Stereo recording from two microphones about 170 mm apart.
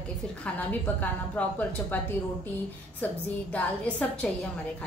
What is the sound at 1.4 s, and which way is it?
Speech, 10° left (ahead or behind).